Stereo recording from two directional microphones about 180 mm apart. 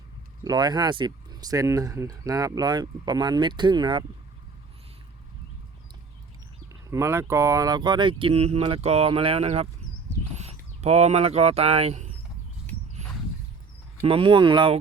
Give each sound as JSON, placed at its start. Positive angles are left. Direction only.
{"t": 0.4, "sound": "speech", "side_deg": -20}
{"t": 6.9, "sound": "speech", "side_deg": -15}
{"t": 14.0, "sound": "speech", "side_deg": -30}